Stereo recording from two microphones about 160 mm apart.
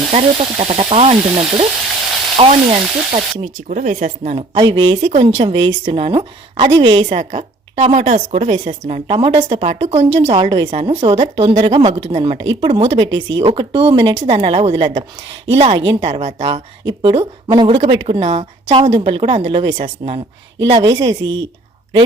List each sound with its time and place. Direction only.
0.1 s a woman's voice: 40° right (ahead or behind)
4.5 s a woman's voice: 30° right (ahead or behind)
5.0 s a woman's voice: 45° right (ahead or behind)
7.2 s a woman's voice: 50° right (ahead or behind)
9.1 s speech: 25° right (ahead or behind)
9.5 s speech: 45° right (ahead or behind)
10.3 s a woman's voice: 30° right (ahead or behind)
13.1 s a woman's voice: 25° right (ahead or behind)